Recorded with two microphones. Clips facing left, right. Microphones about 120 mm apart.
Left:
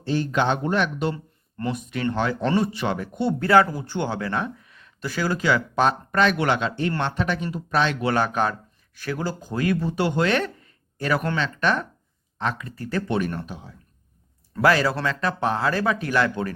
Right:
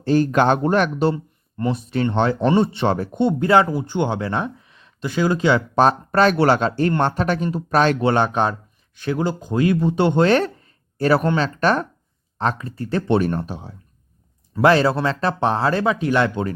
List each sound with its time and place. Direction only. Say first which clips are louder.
0.0 s speech: right 6 dB; 45° right (ahead or behind)
1.1 s speech: right 7 dB; 20° right (ahead or behind)
3.2 s speech: right 1 dB; 20° right (ahead or behind)
5.8 s speech: right 5 dB; 40° right (ahead or behind)
7.9 s speech: right 4 dB; 25° right (ahead or behind)